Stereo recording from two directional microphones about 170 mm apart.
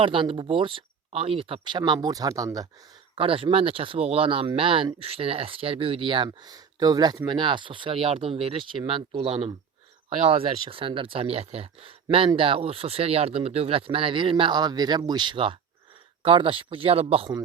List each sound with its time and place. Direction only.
0.0 s speech: 30° right (ahead or behind)
3.2 s speech: 30° right (ahead or behind)